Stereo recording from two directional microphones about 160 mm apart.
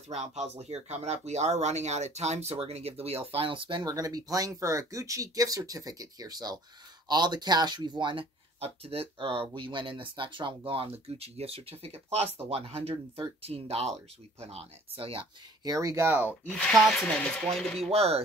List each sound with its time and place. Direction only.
0.1 s speech: 45° right (ahead or behind)
15.6 s speech: 20° right (ahead or behind)
16.3 s speech: 10° left (ahead or behind)
17.9 s speech: 40° right (ahead or behind)